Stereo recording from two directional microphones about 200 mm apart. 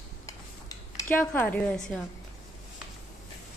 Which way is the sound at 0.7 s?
10° left (ahead or behind).